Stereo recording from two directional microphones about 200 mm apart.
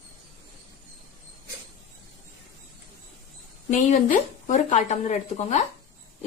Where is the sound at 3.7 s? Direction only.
40° left (ahead or behind).